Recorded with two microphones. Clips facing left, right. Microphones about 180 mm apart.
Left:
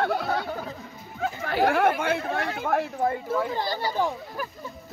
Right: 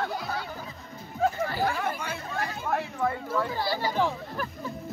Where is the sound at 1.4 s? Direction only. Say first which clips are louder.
Left 7 dB; 65° left (ahead or behind).